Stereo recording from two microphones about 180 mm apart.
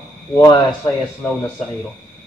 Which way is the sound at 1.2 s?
5° left (ahead or behind).